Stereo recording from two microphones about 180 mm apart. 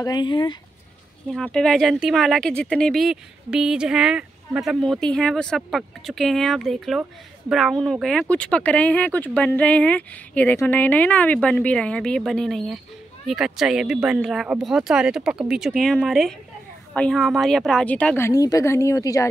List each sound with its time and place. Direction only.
0.0 s speech: 25° left (ahead or behind)
1.3 s speech: 5° left (ahead or behind)